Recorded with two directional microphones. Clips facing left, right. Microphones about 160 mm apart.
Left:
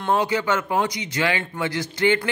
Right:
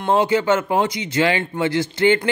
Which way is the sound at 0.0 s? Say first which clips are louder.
Right 4 dB; 25° right (ahead or behind).